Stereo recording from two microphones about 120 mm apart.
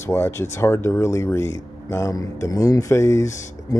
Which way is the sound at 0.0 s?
20° left (ahead or behind).